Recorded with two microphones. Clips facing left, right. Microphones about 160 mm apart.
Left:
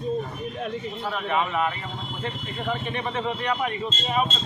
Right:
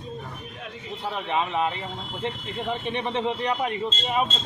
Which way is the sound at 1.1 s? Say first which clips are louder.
Left 1 dB; 20° right (ahead or behind).